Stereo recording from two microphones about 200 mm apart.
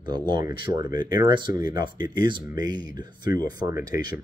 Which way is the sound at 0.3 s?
20° right (ahead or behind).